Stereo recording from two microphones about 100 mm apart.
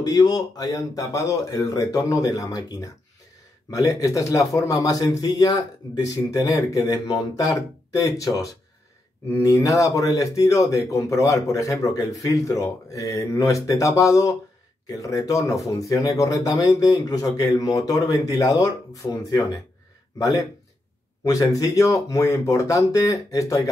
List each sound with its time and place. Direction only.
0.0 s speech: 40° left (ahead or behind)